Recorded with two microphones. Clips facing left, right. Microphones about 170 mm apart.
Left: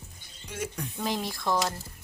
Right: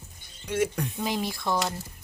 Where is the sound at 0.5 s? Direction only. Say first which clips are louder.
Right 9 dB; 75° right (ahead or behind).